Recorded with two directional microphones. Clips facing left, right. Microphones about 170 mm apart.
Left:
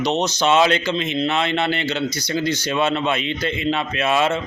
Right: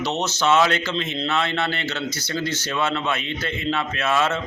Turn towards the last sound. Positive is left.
turn(degrees=15)  # may be behind; listen again after turning